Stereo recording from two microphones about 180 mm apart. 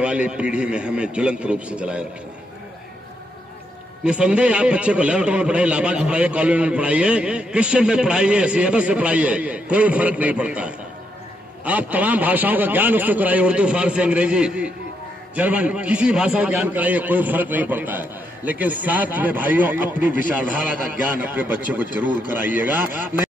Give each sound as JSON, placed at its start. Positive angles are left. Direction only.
{"t": 0.0, "sound": "a man's voice", "side_deg": -5}
{"t": 4.0, "sound": "a man's voice", "side_deg": -5}